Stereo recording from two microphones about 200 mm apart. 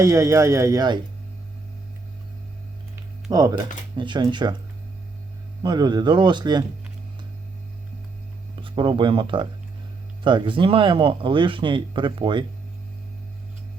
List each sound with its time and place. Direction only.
0.0 s speech: 15° right (ahead or behind)
3.3 s speech: 20° right (ahead or behind)
5.6 s speech: 20° right (ahead or behind)
8.6 s speech: 25° right (ahead or behind)